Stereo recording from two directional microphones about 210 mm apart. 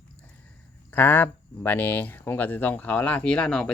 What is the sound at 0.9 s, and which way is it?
Speech, 10° left (ahead or behind).